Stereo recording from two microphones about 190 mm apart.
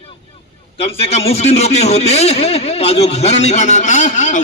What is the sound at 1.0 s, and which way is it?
Speech, 35° left (ahead or behind).